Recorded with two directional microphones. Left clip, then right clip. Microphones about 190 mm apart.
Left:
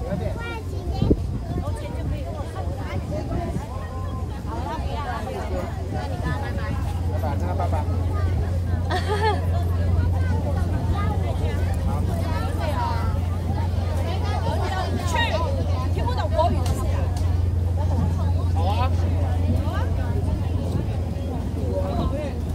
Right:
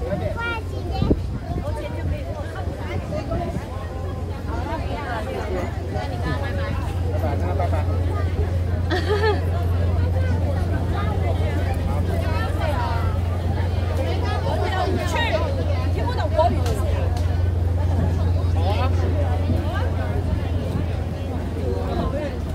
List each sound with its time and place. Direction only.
0.4 s vehicle: centre (ahead or behind)
8.9 s hubbub: 35° left (ahead or behind)
14.5 s hubbub: 30° left (ahead or behind)
16.1 s vehicle: 30° left (ahead or behind)